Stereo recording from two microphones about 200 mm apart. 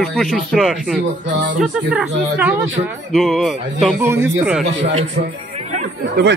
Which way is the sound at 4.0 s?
10° right (ahead or behind).